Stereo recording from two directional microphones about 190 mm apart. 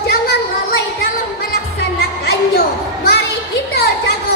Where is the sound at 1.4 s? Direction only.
55° left (ahead or behind).